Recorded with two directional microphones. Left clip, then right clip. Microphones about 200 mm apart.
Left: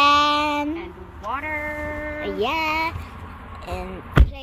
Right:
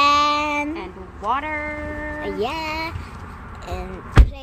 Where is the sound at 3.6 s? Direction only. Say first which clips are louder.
Even; 5° left (ahead or behind).